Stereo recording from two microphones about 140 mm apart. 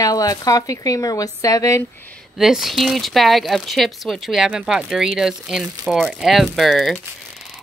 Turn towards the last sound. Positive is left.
turn(degrees=0)  # may be behind; listen again after turning